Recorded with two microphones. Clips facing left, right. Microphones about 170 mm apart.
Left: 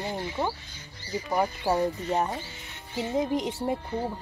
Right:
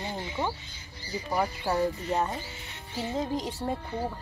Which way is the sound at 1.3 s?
20° left (ahead or behind).